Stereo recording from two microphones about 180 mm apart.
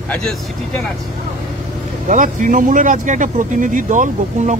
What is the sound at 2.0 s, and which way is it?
Speech, 45° right (ahead or behind).